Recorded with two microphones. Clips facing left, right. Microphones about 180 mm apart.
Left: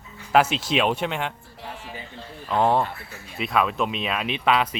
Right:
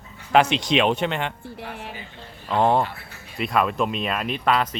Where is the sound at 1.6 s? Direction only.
65° right (ahead or behind).